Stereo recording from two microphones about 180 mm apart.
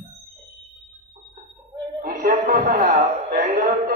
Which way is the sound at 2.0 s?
55° right (ahead or behind).